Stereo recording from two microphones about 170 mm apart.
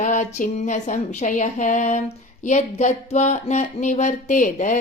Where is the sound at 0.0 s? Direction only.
45° left (ahead or behind).